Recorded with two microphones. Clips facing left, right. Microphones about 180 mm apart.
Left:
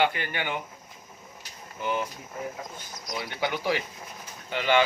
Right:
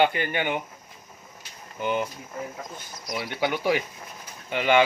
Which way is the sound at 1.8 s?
20° right (ahead or behind).